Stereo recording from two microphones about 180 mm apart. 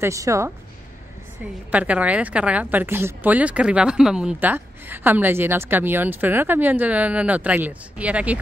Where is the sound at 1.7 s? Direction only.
5° right (ahead or behind).